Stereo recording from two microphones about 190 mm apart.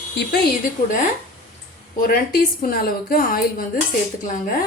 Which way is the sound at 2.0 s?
50° left (ahead or behind).